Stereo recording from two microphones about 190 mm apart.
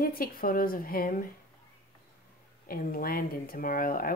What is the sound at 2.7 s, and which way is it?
Speech, 50° left (ahead or behind).